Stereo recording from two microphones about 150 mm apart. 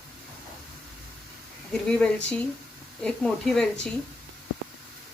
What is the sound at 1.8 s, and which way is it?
A woman's voice, 5° left (ahead or behind).